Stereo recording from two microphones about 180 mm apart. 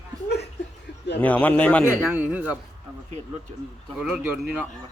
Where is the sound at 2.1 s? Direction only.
10° right (ahead or behind).